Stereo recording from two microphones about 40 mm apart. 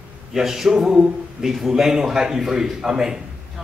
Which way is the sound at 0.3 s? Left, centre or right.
Centre.